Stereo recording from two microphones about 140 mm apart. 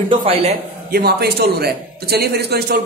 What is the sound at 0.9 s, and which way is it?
Speech, 90° right.